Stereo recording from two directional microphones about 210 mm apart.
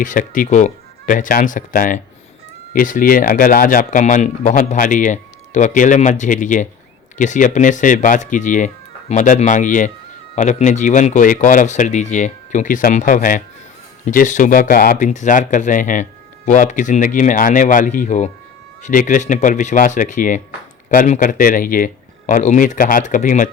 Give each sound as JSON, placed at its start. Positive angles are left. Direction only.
{"t": 0.0, "sound": "speech", "side_deg": 40}